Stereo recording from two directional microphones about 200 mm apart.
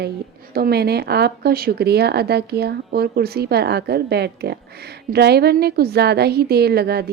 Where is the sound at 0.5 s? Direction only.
50° right (ahead or behind).